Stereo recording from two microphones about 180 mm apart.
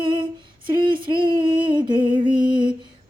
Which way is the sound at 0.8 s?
25° right (ahead or behind).